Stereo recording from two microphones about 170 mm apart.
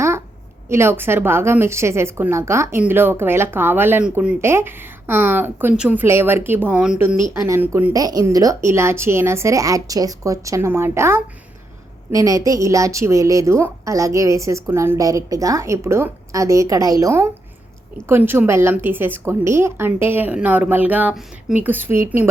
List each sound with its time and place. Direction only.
0.7 s a woman's voice: 15° right (ahead or behind)
7.4 s a woman's voice: 15° right (ahead or behind)
7.9 s a woman's voice: 20° right (ahead or behind)